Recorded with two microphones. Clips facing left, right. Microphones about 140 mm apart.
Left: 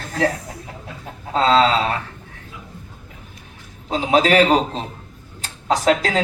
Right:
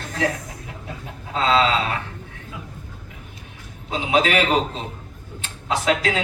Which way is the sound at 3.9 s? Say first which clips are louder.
Left 4 dB; 40° left (ahead or behind).